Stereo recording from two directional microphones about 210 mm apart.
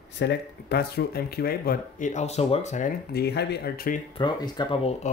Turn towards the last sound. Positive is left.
turn(degrees=25)  # may be behind; listen again after turning